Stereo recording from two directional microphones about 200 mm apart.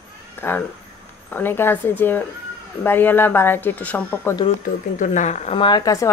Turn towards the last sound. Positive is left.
turn(degrees=15)  # may be behind; listen again after turning